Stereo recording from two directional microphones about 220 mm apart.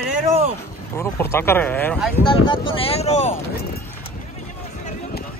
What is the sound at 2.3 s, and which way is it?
Wind noise, 25° left (ahead or behind).